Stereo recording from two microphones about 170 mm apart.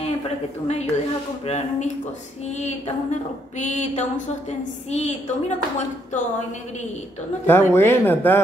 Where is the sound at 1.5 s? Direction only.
40° left (ahead or behind).